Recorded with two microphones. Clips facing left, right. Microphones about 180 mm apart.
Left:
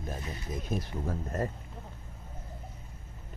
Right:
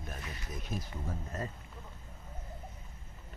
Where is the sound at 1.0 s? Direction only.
50° left (ahead or behind).